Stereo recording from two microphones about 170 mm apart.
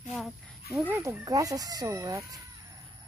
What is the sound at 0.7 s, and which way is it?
Speech, 10° right (ahead or behind).